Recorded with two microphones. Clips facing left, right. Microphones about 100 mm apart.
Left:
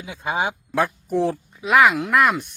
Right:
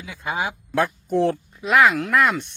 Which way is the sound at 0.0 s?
20° left (ahead or behind).